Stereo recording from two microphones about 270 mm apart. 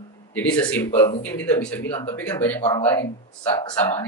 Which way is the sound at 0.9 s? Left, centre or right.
Centre.